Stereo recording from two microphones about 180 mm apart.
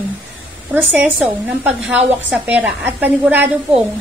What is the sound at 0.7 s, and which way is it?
A woman's voice, 10° right (ahead or behind).